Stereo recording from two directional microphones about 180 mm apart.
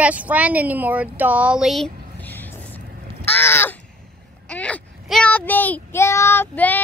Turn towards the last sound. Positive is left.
turn(degrees=10)  # may be behind; listen again after turning